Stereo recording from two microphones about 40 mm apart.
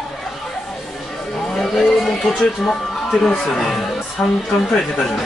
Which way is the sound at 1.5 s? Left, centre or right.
Centre.